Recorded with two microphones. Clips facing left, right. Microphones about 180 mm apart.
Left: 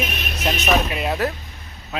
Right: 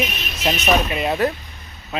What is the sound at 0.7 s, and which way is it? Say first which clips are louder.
Speech: right 1 dB; centre (ahead or behind).